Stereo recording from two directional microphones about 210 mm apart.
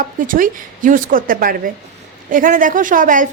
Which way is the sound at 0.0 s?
40° right (ahead or behind).